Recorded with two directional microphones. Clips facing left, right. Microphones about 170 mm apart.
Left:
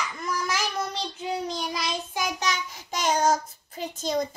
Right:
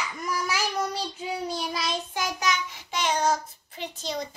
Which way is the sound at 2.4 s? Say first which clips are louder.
Right 1 dB; 40° left (ahead or behind).